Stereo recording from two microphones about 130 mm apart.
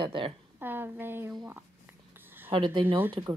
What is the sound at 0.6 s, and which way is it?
Speech, 15° right (ahead or behind).